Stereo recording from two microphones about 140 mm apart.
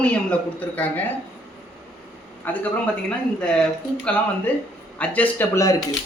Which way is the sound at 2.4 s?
10° left (ahead or behind).